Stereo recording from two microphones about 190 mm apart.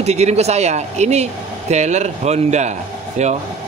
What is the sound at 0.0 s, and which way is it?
Speech, 35° right (ahead or behind).